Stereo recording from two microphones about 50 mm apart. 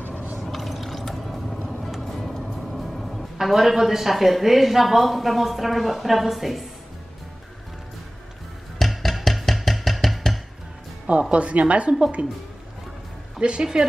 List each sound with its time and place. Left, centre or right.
0.4 s fill: centre
1.9 s speech: centre
8.7 s a sound: centre
11.1 s a woman's voice: right
13.4 s a woman's voice: centre